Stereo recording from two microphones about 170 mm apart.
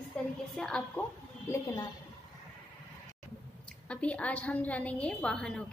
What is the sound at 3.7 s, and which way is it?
A woman's voice, 5° left (ahead or behind).